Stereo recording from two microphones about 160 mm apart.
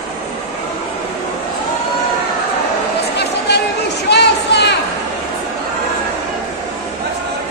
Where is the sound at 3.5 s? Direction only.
90° left.